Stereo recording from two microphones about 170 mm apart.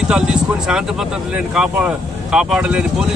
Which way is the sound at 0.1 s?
5° right (ahead or behind).